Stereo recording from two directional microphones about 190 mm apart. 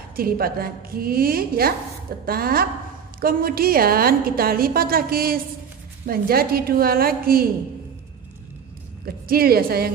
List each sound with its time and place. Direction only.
0.1 s a woman's voice: 50° right (ahead or behind)
9.0 s a woman's voice: 50° right (ahead or behind)